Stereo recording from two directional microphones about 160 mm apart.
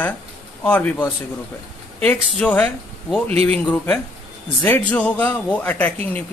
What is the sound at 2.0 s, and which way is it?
A man's voice, 10° left (ahead or behind).